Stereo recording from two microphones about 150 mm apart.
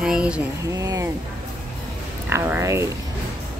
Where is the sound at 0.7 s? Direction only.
25° right (ahead or behind).